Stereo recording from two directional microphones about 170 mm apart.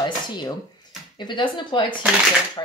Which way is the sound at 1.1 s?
25° left (ahead or behind).